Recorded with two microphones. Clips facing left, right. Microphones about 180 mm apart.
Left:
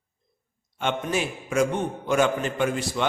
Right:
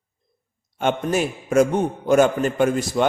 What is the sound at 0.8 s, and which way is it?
A man's voice, 45° right (ahead or behind).